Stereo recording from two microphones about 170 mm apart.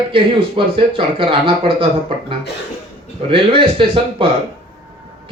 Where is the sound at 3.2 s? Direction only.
30° right (ahead or behind).